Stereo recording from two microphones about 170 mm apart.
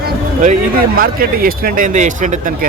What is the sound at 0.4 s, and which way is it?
Speech, 60° right (ahead or behind).